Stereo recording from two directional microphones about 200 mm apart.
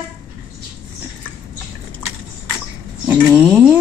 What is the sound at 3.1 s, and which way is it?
Speech, 10° right (ahead or behind).